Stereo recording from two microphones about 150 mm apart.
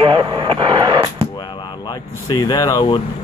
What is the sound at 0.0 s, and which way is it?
Radio, 30° right (ahead or behind).